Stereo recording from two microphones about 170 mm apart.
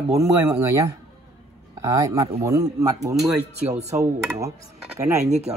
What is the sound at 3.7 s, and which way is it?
Speech, 40° right (ahead or behind).